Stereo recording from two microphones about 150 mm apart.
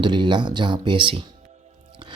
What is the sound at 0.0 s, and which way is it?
Speech, 30° right (ahead or behind).